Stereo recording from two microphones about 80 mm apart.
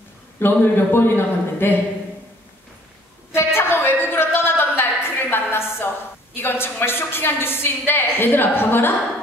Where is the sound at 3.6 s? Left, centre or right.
Left.